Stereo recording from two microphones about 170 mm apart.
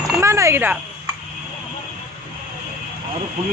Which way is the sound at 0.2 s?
15° right (ahead or behind).